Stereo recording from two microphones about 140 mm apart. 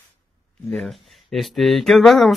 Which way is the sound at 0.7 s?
Centre (ahead or behind).